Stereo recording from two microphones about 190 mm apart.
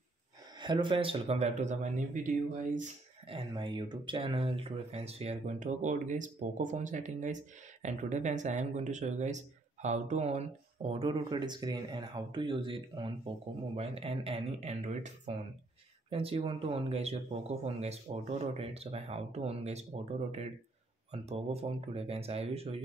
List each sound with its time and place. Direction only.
0.6 s speech: 25° right (ahead or behind); by 2.9 s 45° right (ahead or behind)
3.3 s speech: 25° right (ahead or behind)